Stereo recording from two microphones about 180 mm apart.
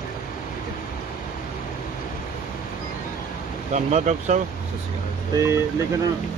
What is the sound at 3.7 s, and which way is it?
Speech, 40° right (ahead or behind).